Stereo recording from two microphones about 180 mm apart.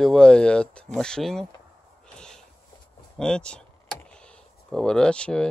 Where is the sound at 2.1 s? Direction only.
5° left (ahead or behind).